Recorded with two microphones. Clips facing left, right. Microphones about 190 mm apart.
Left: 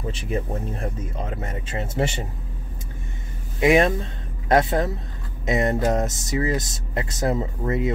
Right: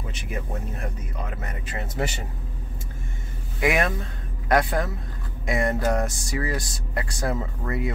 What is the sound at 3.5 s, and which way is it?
Speech, 25° left (ahead or behind).